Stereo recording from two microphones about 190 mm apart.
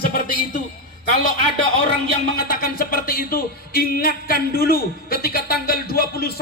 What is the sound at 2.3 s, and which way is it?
Speech, 50° left (ahead or behind).